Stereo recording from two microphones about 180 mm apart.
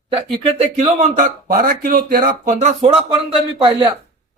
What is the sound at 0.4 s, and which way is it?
Speech, 40° right (ahead or behind).